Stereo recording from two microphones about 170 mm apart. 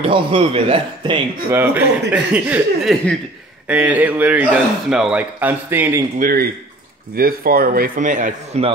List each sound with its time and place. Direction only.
0.0 s speech: 35° right (ahead or behind)
1.5 s a man's voice: 10° right (ahead or behind)
6.1 s a man's voice: 55° right (ahead or behind)